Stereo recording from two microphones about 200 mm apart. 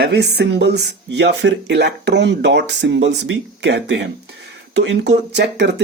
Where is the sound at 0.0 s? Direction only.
55° right (ahead or behind).